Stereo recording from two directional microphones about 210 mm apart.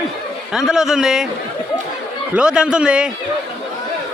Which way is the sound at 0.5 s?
Centre (ahead or behind).